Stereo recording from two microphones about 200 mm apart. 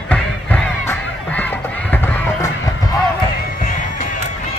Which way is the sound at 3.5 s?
45° left (ahead or behind).